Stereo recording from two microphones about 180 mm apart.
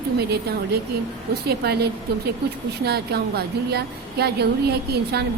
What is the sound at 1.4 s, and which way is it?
Speech, 60° right (ahead or behind).